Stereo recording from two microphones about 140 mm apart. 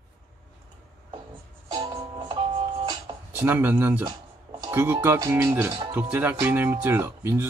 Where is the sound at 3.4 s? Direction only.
15° right (ahead or behind).